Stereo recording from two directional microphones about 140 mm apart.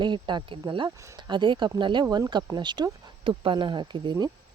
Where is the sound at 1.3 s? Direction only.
35° right (ahead or behind).